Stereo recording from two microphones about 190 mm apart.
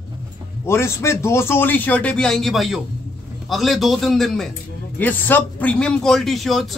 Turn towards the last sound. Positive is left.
turn(degrees=0)  # may be behind; listen again after turning